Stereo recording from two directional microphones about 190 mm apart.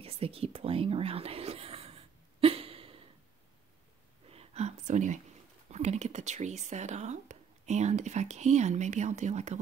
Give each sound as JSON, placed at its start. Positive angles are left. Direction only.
{"t": 0.0, "sound": "whispering", "side_deg": -30}
{"t": 4.3, "sound": "whispering", "side_deg": -35}
{"t": 5.7, "sound": "speech", "side_deg": -35}